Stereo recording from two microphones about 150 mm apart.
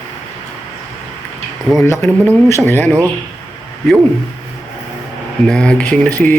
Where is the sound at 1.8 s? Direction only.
15° left (ahead or behind).